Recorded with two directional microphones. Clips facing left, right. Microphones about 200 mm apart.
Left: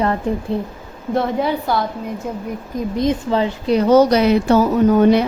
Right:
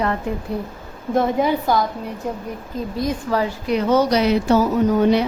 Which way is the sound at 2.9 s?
25° left (ahead or behind).